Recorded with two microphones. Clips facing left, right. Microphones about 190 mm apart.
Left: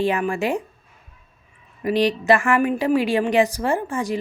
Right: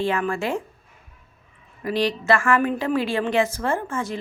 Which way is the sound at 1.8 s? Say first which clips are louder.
Left 4 dB; 20° left (ahead or behind).